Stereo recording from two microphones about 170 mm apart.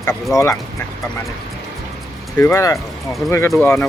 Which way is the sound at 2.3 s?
15° left (ahead or behind).